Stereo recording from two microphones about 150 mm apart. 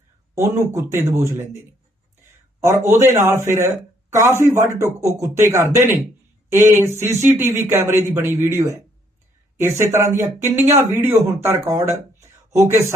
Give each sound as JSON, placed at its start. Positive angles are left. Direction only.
{"t": 0.3, "sound": "speech", "side_deg": -20}
{"t": 2.6, "sound": "speech", "side_deg": -20}
{"t": 9.7, "sound": "speech", "side_deg": -20}